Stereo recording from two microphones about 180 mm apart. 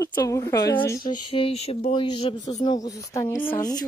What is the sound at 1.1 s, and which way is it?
Speech, 30° left (ahead or behind).